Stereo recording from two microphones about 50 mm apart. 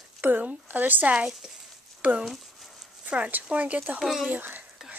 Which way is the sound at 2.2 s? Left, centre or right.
Centre.